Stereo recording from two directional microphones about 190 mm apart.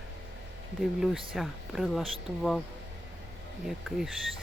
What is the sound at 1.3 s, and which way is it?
Speech, centre (ahead or behind).